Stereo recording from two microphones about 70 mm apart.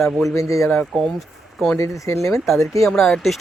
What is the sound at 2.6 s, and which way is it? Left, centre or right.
Speech, left.